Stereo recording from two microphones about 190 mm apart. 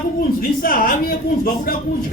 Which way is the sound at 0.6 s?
50° left (ahead or behind).